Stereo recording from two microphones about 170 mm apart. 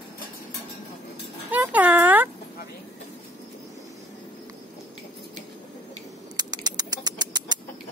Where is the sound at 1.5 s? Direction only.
10° right (ahead or behind).